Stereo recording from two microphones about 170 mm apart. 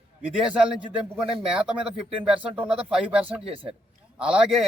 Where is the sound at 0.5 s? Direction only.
5° right (ahead or behind).